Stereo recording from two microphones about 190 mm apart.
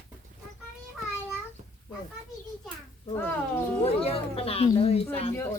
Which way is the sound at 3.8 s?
30° left (ahead or behind).